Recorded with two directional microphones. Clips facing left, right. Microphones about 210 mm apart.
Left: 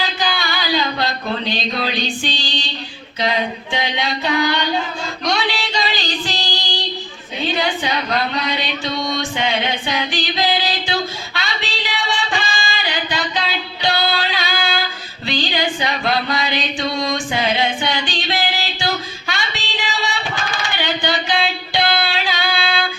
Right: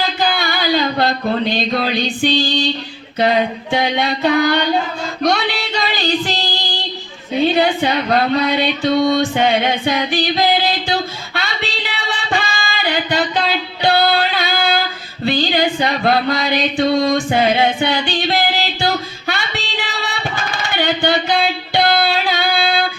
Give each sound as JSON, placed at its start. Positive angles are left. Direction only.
{"t": 0.2, "sound": "a sound", "side_deg": -55}
{"t": 3.2, "sound": "speech", "side_deg": -55}
{"t": 5.2, "sound": "music", "side_deg": -55}
{"t": 7.3, "sound": "speech", "side_deg": -55}
{"t": 11.3, "sound": "singing", "side_deg": -55}
{"t": 13.8, "sound": "music", "side_deg": -55}
{"t": 19.3, "sound": "a sound", "side_deg": -55}